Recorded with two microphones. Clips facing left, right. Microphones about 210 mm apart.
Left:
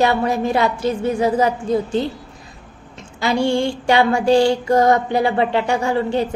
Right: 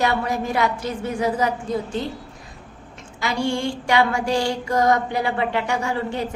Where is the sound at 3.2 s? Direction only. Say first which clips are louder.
Left 5 dB; 30° left (ahead or behind).